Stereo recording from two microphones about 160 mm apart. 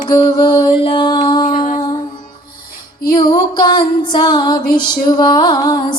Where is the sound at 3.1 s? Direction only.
25° left (ahead or behind).